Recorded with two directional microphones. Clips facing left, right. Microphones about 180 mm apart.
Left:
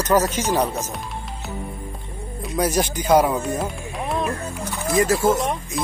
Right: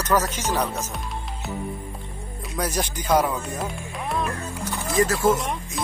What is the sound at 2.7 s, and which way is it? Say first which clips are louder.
Speech: left 4 dB; 25° left (ahead or behind).